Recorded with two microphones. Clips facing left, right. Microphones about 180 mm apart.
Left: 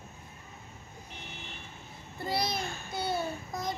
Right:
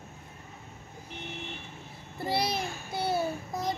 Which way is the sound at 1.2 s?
65° right (ahead or behind).